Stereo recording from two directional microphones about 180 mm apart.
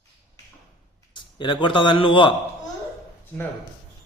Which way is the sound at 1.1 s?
25° left (ahead or behind).